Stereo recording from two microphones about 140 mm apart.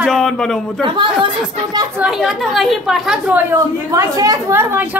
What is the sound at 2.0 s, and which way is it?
A woman's voice, centre (ahead or behind).